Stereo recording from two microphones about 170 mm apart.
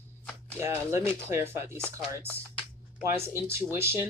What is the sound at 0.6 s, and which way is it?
Speech, 15° right (ahead or behind).